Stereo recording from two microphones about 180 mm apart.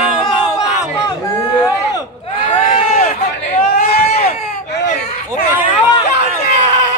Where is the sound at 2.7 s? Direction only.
35° left (ahead or behind).